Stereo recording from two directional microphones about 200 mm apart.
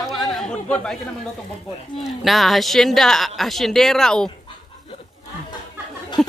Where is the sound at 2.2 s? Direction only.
Centre (ahead or behind).